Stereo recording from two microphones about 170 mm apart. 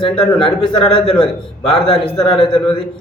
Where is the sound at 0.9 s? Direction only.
30° left (ahead or behind).